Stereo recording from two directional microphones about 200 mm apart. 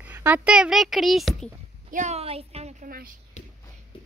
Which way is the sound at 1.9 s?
35° right (ahead or behind).